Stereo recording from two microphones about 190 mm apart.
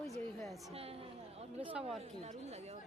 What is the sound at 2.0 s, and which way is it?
Speech, 35° right (ahead or behind).